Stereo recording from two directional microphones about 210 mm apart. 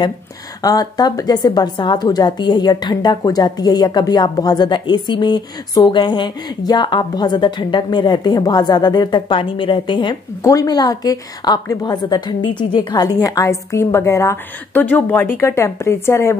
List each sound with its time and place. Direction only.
0.6 s a woman's voice: 20° left (ahead or behind)